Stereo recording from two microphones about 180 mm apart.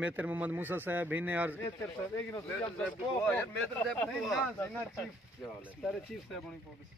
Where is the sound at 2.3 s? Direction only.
10° left (ahead or behind).